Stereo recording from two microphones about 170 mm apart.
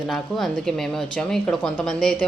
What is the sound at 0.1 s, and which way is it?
A woman's voice, centre (ahead or behind).